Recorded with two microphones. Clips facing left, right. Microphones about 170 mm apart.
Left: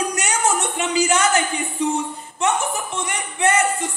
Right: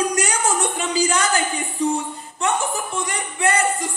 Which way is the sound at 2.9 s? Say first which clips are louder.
Right 1 dB; 35° right (ahead or behind).